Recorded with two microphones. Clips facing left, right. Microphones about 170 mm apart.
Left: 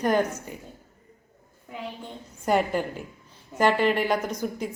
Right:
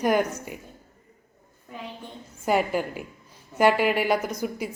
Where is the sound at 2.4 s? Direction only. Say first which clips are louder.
Even; 5° right (ahead or behind).